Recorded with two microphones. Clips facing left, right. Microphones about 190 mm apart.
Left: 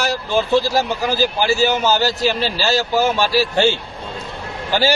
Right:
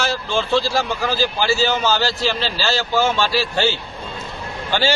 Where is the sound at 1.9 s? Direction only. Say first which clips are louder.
Left 3 dB; 15° left (ahead or behind).